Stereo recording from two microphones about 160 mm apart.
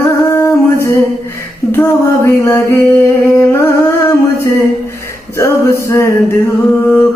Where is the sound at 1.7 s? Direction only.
15° left (ahead or behind).